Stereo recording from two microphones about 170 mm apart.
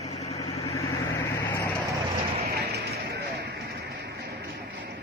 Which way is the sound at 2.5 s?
65° right (ahead or behind).